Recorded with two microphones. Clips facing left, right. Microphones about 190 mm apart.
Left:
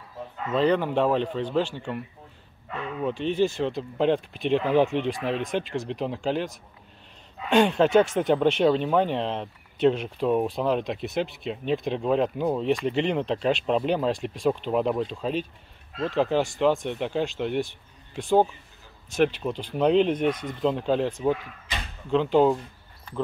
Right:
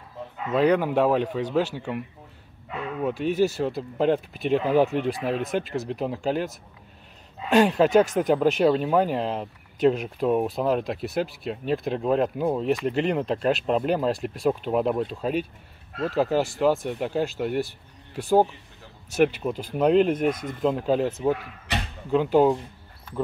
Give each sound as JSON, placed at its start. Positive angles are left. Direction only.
{"t": 0.5, "sound": "speech", "side_deg": -10}
{"t": 7.9, "sound": "speech", "side_deg": -40}
{"t": 8.2, "sound": "speech", "side_deg": -5}
{"t": 21.7, "sound": "a sound", "side_deg": -70}
{"t": 22.1, "sound": "speech", "side_deg": -10}